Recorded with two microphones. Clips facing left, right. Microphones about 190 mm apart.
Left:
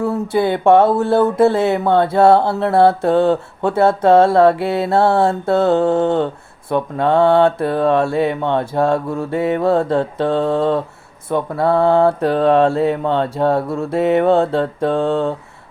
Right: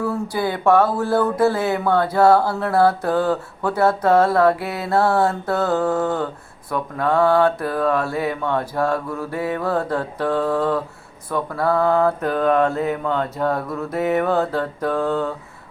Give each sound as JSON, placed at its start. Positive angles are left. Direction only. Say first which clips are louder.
{"t": 0.0, "sound": "speech", "louder": "left 5 dB", "side_deg": 25}